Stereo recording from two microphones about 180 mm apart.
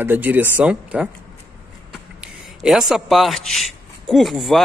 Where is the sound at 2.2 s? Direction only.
Centre (ahead or behind).